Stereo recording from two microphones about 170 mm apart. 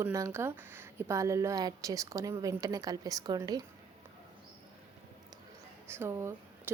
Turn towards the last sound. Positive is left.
turn(degrees=-15)  # may be behind; listen again after turning